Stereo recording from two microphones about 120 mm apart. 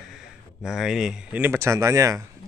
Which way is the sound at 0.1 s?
5° right (ahead or behind).